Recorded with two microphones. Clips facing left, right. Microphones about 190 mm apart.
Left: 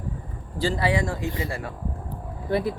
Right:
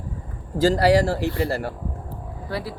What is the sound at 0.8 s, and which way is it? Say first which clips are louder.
Speech: right 6 dB; 75° right (ahead or behind).